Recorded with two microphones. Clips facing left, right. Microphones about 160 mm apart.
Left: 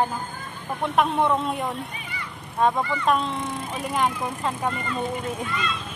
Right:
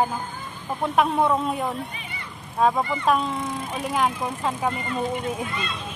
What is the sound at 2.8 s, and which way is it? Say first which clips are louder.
Speech: right 1 dB; 25° right (ahead or behind).